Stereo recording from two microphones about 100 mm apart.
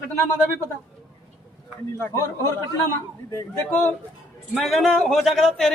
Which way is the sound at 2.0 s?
25° left (ahead or behind).